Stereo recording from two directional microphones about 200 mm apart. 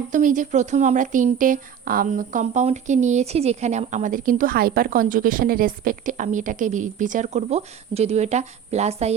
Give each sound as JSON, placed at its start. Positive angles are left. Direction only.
{"t": 0.1, "sound": "speech", "side_deg": -40}